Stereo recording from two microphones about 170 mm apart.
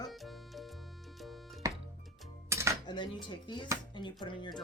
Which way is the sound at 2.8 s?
25° left (ahead or behind).